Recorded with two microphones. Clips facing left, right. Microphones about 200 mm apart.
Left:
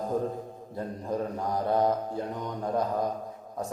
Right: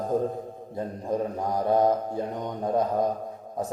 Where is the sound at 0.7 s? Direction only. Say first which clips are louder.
Right 3 dB; 20° right (ahead or behind).